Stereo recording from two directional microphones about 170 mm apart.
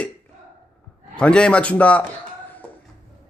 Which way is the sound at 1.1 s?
5° left (ahead or behind).